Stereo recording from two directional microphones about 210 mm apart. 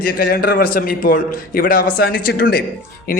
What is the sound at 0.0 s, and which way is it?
A man's voice, 45° left (ahead or behind).